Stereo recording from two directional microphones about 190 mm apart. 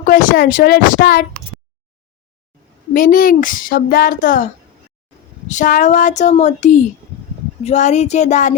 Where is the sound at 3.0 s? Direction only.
45° left (ahead or behind).